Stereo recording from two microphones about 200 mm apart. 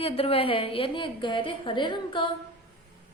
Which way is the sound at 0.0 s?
30° left (ahead or behind).